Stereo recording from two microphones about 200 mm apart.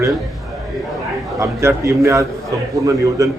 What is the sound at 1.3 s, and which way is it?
A man's voice, 15° right (ahead or behind).